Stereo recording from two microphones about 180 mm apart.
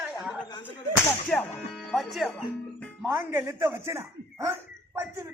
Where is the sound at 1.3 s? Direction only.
5° left (ahead or behind).